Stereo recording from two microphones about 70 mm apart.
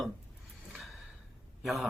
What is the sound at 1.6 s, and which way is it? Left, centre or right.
Speech, centre.